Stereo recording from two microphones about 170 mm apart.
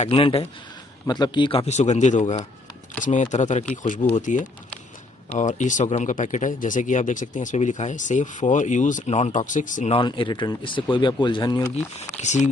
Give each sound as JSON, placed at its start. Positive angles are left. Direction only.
{"t": 0.0, "sound": "speech", "side_deg": 35}
{"t": 1.7, "sound": "speech", "side_deg": 40}
{"t": 9.9, "sound": "speech", "side_deg": 30}
{"t": 12.2, "sound": "speech", "side_deg": 45}